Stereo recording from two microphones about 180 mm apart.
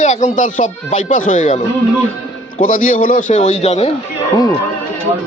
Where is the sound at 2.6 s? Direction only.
50° left (ahead or behind).